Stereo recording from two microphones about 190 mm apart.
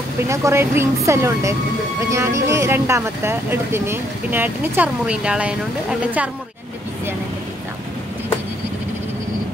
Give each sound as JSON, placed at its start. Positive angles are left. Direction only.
{"t": 0.3, "sound": "speech", "side_deg": -15}